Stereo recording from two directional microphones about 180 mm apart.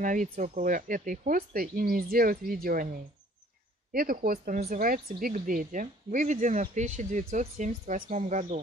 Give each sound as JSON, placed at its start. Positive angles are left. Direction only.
{"t": 0.0, "sound": "speech", "side_deg": -45}